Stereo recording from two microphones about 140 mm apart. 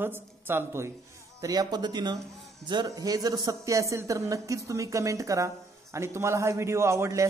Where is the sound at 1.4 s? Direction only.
25° right (ahead or behind).